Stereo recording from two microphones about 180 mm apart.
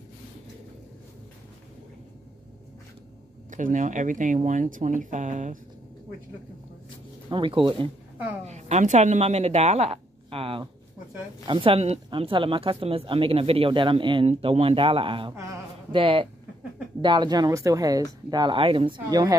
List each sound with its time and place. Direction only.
3.4 s speech: 45° right (ahead or behind)
7.2 s speech: 30° right (ahead or behind)
8.5 s speech: 40° right (ahead or behind); by 19.3 s 20° right (ahead or behind)